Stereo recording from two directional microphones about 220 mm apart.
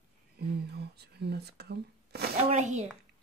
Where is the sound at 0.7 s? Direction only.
45° right (ahead or behind).